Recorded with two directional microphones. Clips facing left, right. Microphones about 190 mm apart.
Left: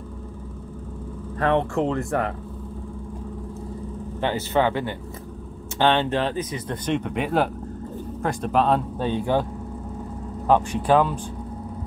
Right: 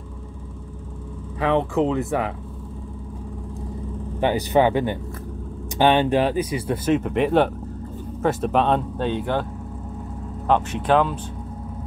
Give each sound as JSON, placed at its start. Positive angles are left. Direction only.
{"t": 1.4, "sound": "speech", "side_deg": 0}
{"t": 4.2, "sound": "speech", "side_deg": -15}